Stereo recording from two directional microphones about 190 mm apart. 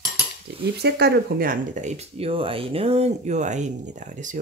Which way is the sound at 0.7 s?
60° right (ahead or behind).